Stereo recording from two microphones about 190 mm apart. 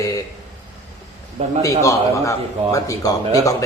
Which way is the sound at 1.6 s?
15° left (ahead or behind).